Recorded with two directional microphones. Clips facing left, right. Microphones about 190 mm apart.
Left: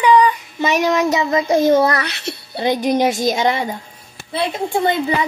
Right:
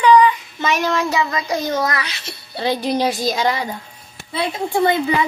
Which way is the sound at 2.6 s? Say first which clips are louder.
Left 3 dB; 20° left (ahead or behind).